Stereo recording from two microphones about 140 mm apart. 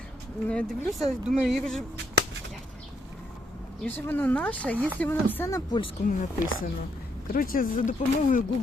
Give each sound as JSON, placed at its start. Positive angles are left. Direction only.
{"t": 0.4, "sound": "speech", "side_deg": 5}
{"t": 3.8, "sound": "speech", "side_deg": 15}
{"t": 6.1, "sound": "speech", "side_deg": 70}
{"t": 7.3, "sound": "speech", "side_deg": 90}